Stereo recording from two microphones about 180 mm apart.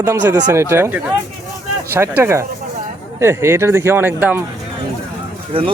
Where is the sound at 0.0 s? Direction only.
15° right (ahead or behind).